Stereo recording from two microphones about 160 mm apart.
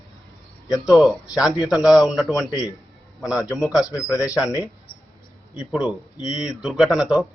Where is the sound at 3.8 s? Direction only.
20° left (ahead or behind).